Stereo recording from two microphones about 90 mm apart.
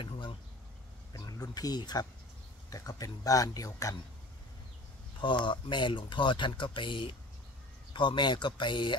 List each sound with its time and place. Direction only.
1.1 s a man's voice: 45° left (ahead or behind)
5.2 s speech: 60° left (ahead or behind)